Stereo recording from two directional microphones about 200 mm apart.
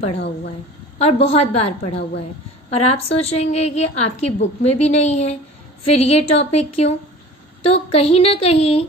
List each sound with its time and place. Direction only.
0.9 s a woman's voice: 30° left (ahead or behind)